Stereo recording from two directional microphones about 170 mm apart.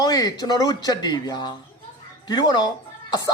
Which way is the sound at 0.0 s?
20° left (ahead or behind).